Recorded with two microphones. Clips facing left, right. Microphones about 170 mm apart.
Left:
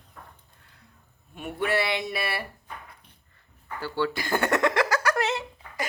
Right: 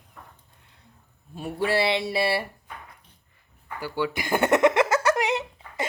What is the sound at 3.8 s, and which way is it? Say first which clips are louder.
Speech: even; 15° right (ahead or behind).